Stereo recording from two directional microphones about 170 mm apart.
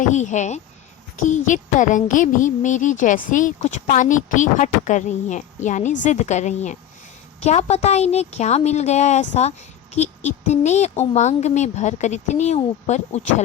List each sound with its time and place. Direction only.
0.0 s a woman's voice: 45° left (ahead or behind)